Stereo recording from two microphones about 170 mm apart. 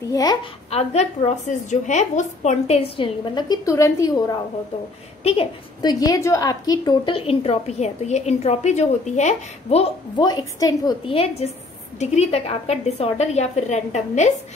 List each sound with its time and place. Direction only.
0.1 s a woman's voice: 20° left (ahead or behind)
0.7 s a woman's voice: 40° left (ahead or behind); by 4.4 s 20° left (ahead or behind)
5.2 s a woman's voice: 35° left (ahead or behind)
10.2 s a woman's voice: 25° left (ahead or behind); by 14.3 s 45° left (ahead or behind)